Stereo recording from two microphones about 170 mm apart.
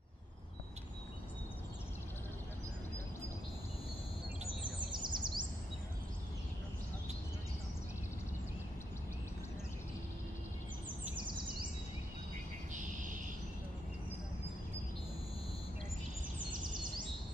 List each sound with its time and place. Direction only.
4.9 s bird vocalization: 25° right (ahead or behind)